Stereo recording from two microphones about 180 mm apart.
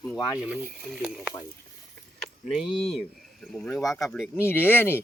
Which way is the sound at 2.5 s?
5° left (ahead or behind).